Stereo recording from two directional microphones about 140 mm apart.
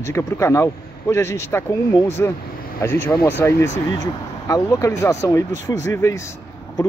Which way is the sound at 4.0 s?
25° left (ahead or behind).